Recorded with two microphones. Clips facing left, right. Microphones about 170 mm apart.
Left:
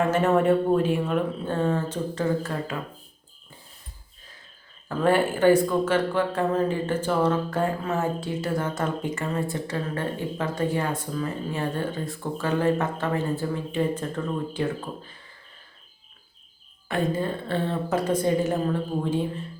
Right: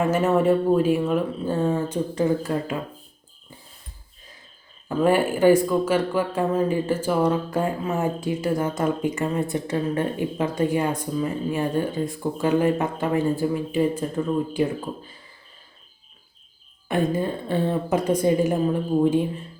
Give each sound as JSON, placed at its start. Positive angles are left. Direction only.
{"t": 0.1, "sound": "speech", "side_deg": -5}
{"t": 4.9, "sound": "speech", "side_deg": -10}
{"t": 16.9, "sound": "speech", "side_deg": -15}